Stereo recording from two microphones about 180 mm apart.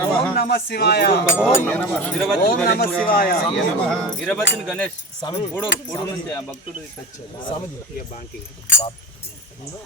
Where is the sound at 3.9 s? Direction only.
5° left (ahead or behind).